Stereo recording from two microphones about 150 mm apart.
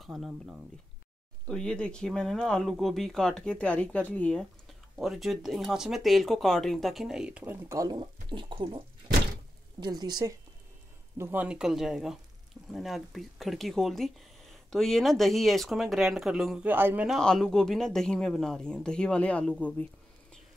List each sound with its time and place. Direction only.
0.0 s a woman's voice: centre (ahead or behind); by 10.3 s 25° right (ahead or behind)
11.1 s speech: 15° right (ahead or behind)
17.1 s speech: 5° left (ahead or behind)